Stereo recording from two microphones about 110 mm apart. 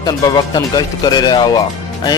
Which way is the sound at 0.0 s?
35° left (ahead or behind).